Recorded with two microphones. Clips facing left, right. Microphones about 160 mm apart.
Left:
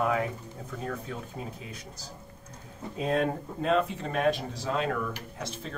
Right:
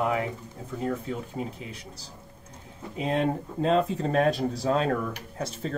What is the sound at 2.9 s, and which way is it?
Speech, 25° right (ahead or behind).